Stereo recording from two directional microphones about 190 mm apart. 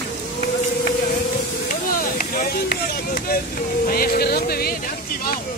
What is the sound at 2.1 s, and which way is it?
Speech, 50° left (ahead or behind).